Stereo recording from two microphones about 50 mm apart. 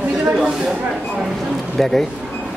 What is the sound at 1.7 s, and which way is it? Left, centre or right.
Speech, centre.